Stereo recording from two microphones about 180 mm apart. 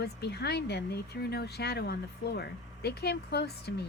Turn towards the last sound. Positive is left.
turn(degrees=65)  # may be behind; listen again after turning